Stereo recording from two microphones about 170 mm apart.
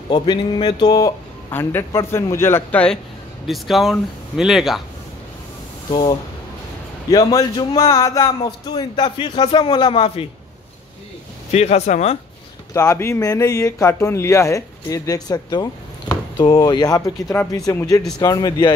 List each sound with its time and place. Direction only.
0.1 s speech: 25° left (ahead or behind)
1.5 s a man's voice: 15° left (ahead or behind)
5.9 s speech: 25° left (ahead or behind)
7.3 s speech: 20° left (ahead or behind)
8.3 s speech: 30° left (ahead or behind)
11.5 s speech: 40° left (ahead or behind)
12.7 s speech: 15° left (ahead or behind)